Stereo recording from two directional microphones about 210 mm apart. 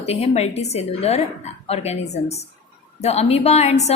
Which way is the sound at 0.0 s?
30° left (ahead or behind).